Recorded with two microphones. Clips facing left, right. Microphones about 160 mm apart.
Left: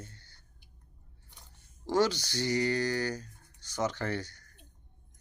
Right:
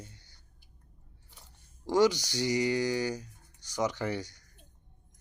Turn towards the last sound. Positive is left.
turn(degrees=-15)  # may be behind; listen again after turning